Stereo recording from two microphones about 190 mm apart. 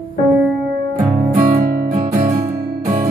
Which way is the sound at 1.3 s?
50° right (ahead or behind).